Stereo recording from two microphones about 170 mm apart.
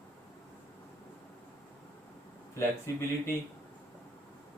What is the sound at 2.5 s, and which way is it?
Speech, 15° left (ahead or behind).